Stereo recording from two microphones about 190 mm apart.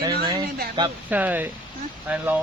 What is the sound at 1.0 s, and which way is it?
Speech, 10° right (ahead or behind).